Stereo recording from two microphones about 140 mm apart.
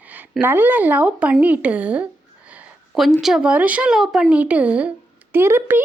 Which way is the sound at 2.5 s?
10° right (ahead or behind).